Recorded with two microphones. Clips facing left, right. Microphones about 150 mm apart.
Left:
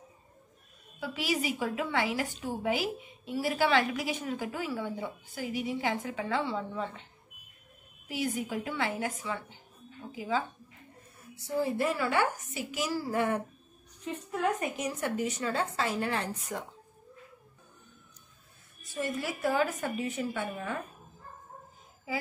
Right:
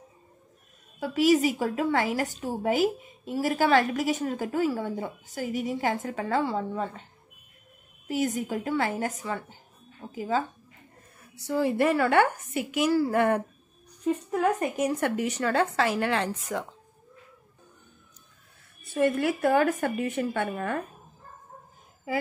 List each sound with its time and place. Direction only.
0.9 s a woman's voice: 45° right (ahead or behind)
8.1 s a woman's voice: 45° right (ahead or behind)
11.3 s a woman's voice: 75° right (ahead or behind)
14.3 s speech: 45° right (ahead or behind); by 16.6 s 90° right
18.9 s a woman's voice: 60° right (ahead or behind)
22.1 s speech: 55° right (ahead or behind)